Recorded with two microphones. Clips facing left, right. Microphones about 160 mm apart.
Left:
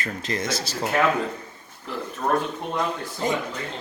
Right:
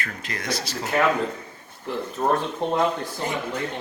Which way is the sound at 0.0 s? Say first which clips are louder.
Left 5 dB; 25° left (ahead or behind).